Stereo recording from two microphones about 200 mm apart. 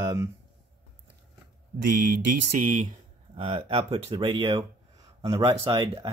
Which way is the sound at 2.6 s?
40° right (ahead or behind).